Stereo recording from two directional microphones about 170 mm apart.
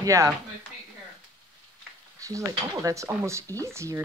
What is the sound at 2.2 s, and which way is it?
A woman's voice, 20° right (ahead or behind).